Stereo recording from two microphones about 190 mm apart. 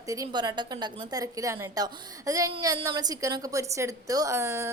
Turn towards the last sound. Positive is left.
turn(degrees=-15)  # may be behind; listen again after turning